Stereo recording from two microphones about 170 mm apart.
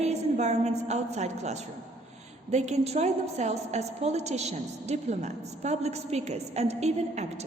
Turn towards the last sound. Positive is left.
turn(degrees=-40)  # may be behind; listen again after turning